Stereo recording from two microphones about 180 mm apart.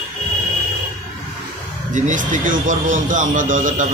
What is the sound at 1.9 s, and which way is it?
A man's voice, 45° right (ahead or behind).